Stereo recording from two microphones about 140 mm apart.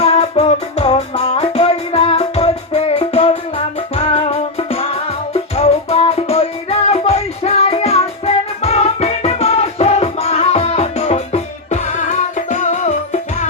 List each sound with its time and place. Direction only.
0.0 s music: 45° left (ahead or behind)